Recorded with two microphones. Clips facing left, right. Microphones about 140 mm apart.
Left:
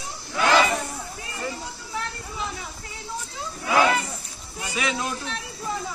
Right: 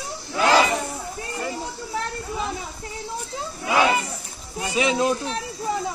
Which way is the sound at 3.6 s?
20° right (ahead or behind).